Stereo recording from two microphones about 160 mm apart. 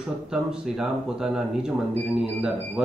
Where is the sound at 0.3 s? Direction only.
5° right (ahead or behind).